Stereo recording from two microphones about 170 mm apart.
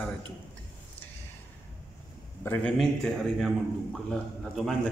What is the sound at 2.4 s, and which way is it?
A man's voice, 10° left (ahead or behind).